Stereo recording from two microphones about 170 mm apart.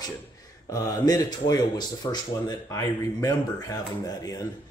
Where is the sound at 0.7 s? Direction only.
20° left (ahead or behind).